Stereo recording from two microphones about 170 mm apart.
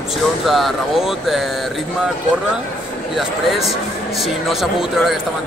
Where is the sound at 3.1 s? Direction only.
Centre (ahead or behind).